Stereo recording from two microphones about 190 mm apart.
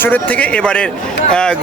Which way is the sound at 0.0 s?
10° left (ahead or behind).